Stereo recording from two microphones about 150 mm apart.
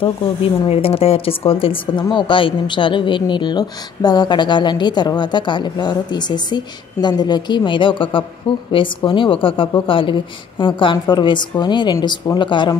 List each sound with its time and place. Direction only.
0.0 s speech: 40° left (ahead or behind)